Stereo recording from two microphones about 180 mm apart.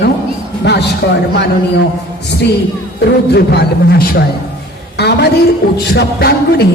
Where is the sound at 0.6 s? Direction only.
65° left (ahead or behind).